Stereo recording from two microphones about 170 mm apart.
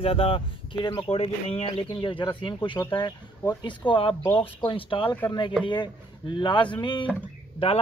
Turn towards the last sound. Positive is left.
turn(degrees=35)  # may be behind; listen again after turning